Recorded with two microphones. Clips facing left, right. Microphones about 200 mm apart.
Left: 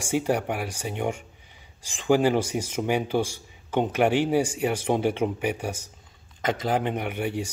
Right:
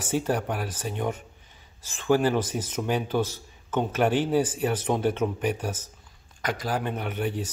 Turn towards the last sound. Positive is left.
turn(degrees=10)  # may be behind; listen again after turning